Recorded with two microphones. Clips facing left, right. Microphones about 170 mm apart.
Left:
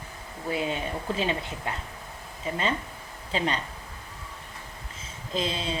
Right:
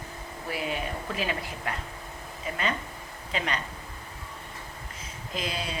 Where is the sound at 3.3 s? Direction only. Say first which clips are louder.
Left 4 dB; 30° left (ahead or behind).